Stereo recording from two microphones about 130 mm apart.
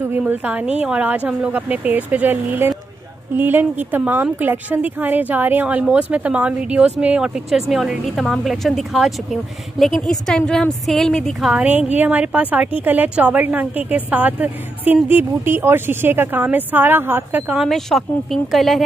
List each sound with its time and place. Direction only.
0.3 s a woman's voice: 10° right (ahead or behind)
11.5 s a woman's voice: 10° right (ahead or behind)
17.6 s a woman's voice: centre (ahead or behind)